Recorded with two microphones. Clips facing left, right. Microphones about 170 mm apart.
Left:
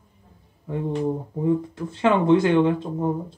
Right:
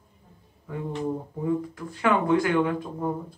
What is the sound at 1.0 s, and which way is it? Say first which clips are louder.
Speech: left 3 dB; 25° left (ahead or behind).